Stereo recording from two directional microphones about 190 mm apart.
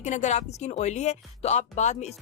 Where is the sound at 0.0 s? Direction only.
40° left (ahead or behind).